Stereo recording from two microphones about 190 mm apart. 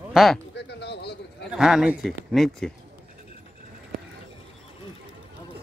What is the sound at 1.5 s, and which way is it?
Speech, 5° right (ahead or behind).